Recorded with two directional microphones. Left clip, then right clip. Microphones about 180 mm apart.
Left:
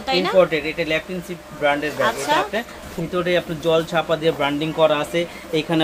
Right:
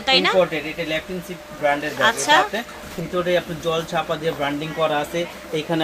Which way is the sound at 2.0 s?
10° right (ahead or behind).